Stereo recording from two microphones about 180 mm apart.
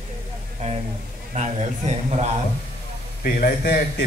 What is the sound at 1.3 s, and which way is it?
Speech, 40° right (ahead or behind).